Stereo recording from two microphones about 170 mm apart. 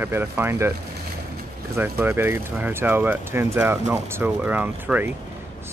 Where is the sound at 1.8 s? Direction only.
10° right (ahead or behind).